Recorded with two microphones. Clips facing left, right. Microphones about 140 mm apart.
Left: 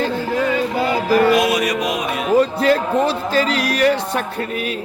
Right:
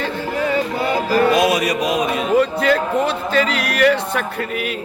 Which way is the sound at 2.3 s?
30° left (ahead or behind).